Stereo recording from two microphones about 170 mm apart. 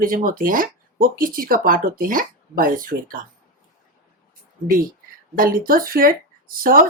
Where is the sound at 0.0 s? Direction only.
55° right (ahead or behind).